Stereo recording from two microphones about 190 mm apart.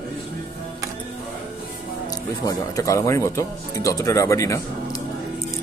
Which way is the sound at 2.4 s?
15° left (ahead or behind).